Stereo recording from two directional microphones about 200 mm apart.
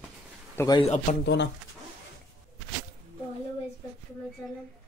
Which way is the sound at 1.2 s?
60° left (ahead or behind).